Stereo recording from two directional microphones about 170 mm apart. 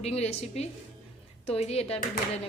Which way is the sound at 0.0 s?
40° left (ahead or behind).